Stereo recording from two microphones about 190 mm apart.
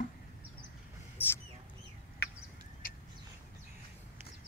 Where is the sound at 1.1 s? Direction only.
10° left (ahead or behind).